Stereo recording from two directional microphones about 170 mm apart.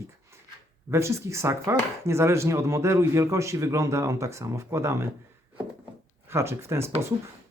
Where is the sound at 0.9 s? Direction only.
15° right (ahead or behind).